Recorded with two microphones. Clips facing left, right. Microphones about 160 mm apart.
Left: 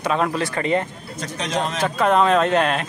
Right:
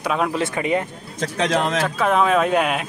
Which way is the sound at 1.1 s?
90° right.